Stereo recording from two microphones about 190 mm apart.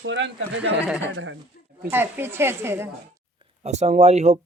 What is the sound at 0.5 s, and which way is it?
A woman's voice, 5° right (ahead or behind).